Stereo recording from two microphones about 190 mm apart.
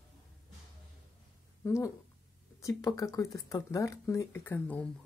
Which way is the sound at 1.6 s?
15° left (ahead or behind).